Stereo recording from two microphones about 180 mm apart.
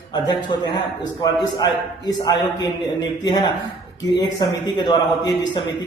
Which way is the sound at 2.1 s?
20° left (ahead or behind).